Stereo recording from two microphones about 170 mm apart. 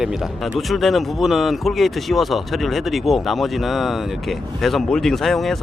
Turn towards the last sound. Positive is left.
turn(degrees=0)  # may be behind; listen again after turning